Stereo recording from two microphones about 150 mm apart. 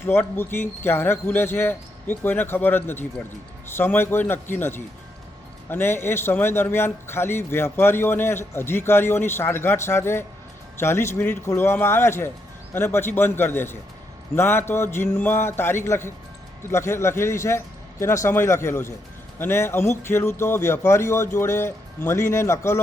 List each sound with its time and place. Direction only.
0.0 s a man's voice: 15° left (ahead or behind)